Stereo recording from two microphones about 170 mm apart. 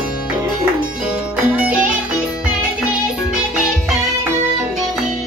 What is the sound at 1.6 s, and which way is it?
Music, 5° right (ahead or behind).